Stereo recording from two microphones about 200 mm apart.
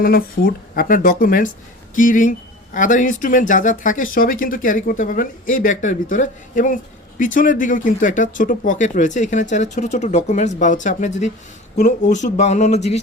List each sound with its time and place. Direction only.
0.0 s speech: 45° left (ahead or behind)